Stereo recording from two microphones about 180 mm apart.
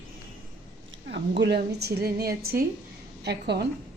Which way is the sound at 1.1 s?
70° right (ahead or behind).